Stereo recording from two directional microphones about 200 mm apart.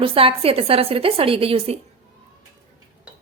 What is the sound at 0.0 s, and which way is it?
A woman's voice, 25° right (ahead or behind).